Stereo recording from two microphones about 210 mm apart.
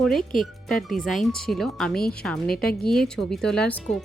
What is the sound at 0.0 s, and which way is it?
Speech, centre (ahead or behind).